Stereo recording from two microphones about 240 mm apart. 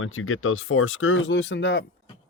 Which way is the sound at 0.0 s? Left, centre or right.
Left.